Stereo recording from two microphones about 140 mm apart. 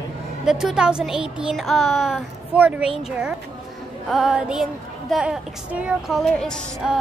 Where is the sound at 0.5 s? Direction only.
5° right (ahead or behind).